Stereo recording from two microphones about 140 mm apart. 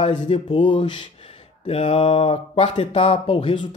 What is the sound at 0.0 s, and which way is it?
Speech, 40° left (ahead or behind).